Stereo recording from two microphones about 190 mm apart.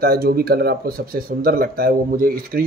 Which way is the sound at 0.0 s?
55° right (ahead or behind).